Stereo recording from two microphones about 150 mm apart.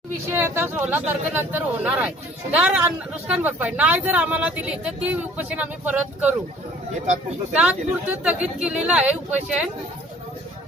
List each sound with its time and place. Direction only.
0.3 s speech: 15° right (ahead or behind)
7.5 s speech: 5° right (ahead or behind)